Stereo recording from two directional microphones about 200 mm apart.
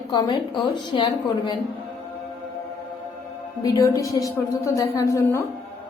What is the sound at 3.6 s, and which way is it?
A woman's voice, 15° left (ahead or behind).